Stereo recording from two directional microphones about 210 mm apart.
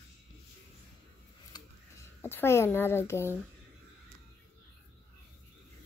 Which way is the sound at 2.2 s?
10° left (ahead or behind).